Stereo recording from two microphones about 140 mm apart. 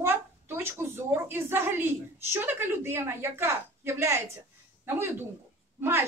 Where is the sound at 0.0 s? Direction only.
15° right (ahead or behind).